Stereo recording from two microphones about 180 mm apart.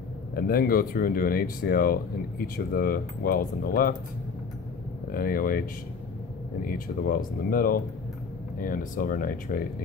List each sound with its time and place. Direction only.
0.4 s speech: 55° left (ahead or behind)
5.1 s speech: 55° left (ahead or behind)
6.7 s speech: 50° left (ahead or behind)